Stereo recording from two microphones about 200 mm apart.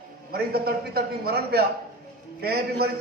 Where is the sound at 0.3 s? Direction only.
50° right (ahead or behind).